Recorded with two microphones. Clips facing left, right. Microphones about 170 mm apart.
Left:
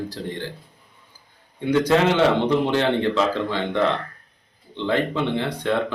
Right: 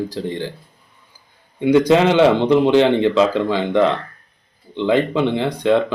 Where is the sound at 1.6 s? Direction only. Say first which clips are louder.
Right 5 dB; 15° right (ahead or behind).